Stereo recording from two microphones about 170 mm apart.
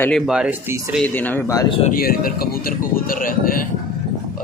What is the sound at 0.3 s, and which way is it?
Speech, 5° right (ahead or behind).